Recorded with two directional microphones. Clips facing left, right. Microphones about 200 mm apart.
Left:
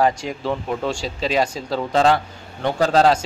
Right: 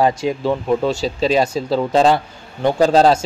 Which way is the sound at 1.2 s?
30° right (ahead or behind).